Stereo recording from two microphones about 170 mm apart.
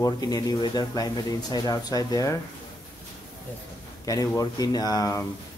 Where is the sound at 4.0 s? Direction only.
20° left (ahead or behind).